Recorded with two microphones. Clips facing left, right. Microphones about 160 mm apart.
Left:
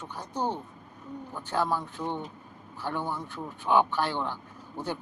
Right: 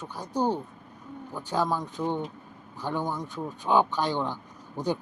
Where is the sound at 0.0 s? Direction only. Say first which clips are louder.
Right 4 dB; 10° right (ahead or behind).